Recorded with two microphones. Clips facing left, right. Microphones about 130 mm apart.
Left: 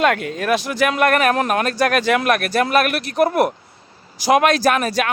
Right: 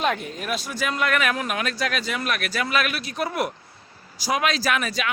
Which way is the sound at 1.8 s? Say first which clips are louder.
Left 10 dB; 65° left (ahead or behind).